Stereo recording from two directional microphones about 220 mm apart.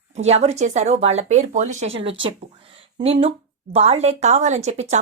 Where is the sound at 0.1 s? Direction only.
30° right (ahead or behind).